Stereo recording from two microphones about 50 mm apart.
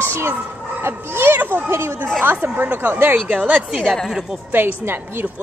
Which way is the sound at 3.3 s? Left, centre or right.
Right.